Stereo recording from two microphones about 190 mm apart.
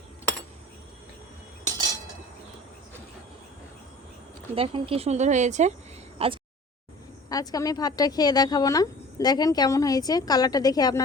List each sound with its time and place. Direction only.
4.5 s speech: 30° right (ahead or behind)
6.1 s a sound: 30° right (ahead or behind)
7.3 s speech: 20° left (ahead or behind)